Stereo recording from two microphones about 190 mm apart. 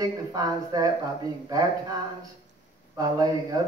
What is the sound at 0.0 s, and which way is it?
Speech, 20° right (ahead or behind).